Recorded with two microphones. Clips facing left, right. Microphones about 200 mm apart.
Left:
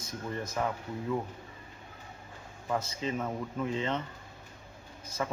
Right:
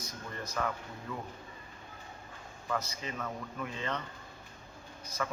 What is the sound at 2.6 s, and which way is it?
A man's voice, 25° left (ahead or behind).